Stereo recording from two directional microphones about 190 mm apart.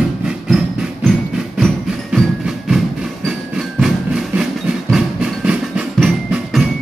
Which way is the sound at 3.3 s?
Centre (ahead or behind).